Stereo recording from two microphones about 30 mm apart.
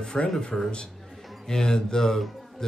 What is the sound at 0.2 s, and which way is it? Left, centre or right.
A man's voice, left.